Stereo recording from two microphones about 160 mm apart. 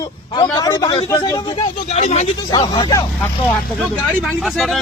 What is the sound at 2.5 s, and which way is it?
Speech, 30° left (ahead or behind).